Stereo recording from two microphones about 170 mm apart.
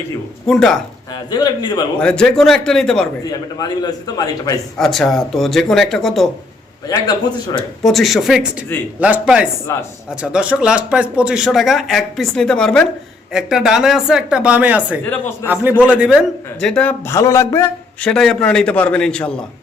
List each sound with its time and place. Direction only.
0.4 s speech: centre (ahead or behind)
1.1 s a man's voice: 25° left (ahead or behind)
2.0 s speech: 5° left (ahead or behind)
3.2 s a man's voice: 25° left (ahead or behind)
4.8 s speech: centre (ahead or behind)
6.8 s a man's voice: 20° left (ahead or behind)
7.9 s speech: centre (ahead or behind)
9.7 s a man's voice: 15° left (ahead or behind)
10.2 s speech: 5° right (ahead or behind)
15.0 s a man's voice: 10° left (ahead or behind)
15.8 s a man's voice: 10° right (ahead or behind); by 18.1 s 15° left (ahead or behind)
18.1 s speech: 5° left (ahead or behind)